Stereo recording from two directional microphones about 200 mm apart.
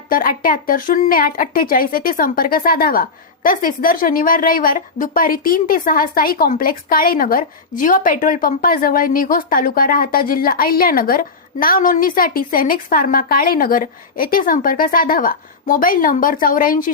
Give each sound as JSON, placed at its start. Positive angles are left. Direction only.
{"t": 0.1, "sound": "speech", "side_deg": 45}